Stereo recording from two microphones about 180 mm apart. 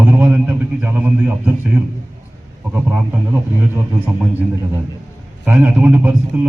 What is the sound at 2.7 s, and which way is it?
A man's voice, 10° right (ahead or behind).